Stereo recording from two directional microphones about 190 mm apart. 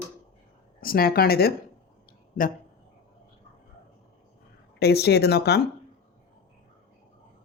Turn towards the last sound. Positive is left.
turn(degrees=60)  # may be behind; listen again after turning